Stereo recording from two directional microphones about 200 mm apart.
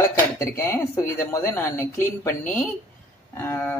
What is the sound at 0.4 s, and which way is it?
Speech, 15° left (ahead or behind).